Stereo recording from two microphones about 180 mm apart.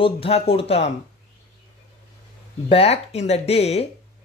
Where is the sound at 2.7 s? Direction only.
35° left (ahead or behind).